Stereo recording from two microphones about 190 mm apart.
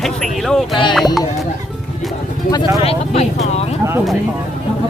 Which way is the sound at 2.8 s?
35° left (ahead or behind).